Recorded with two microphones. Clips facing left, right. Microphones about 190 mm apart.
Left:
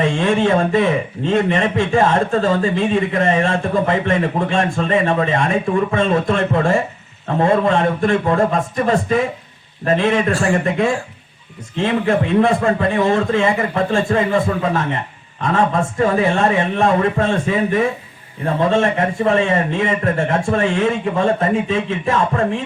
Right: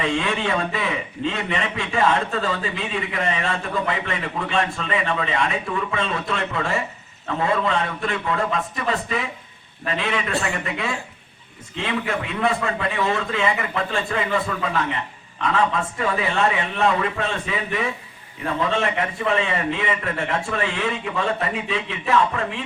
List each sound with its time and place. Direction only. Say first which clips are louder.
0.0 s a man's voice: left 7 dB; 50° left (ahead or behind)